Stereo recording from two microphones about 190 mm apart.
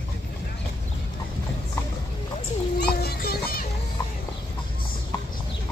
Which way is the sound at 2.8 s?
55° left (ahead or behind).